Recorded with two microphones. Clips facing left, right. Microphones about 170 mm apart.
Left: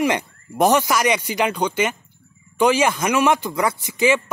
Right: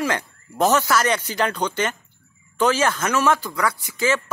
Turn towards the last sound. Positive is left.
turn(degrees=20)  # may be behind; listen again after turning